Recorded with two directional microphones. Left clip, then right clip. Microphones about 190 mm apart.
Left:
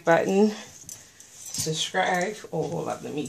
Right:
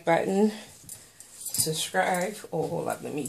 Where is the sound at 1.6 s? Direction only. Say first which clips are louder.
Left 1 dB; centre (ahead or behind).